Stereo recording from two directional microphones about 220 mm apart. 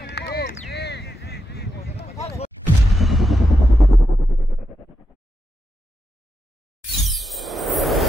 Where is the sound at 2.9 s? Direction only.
Centre (ahead or behind).